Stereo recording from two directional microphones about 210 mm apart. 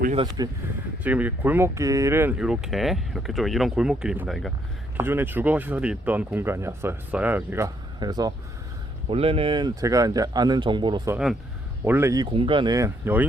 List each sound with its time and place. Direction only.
0.4 s speech: 20° right (ahead or behind)
1.0 s speech: 5° right (ahead or behind)